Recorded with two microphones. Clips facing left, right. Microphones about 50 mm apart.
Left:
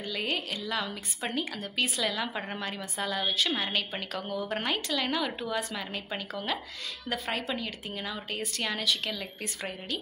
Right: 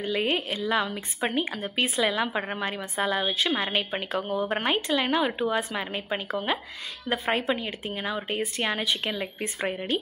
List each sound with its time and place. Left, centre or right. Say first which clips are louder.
0.0 s a woman's voice: right 6 dB; right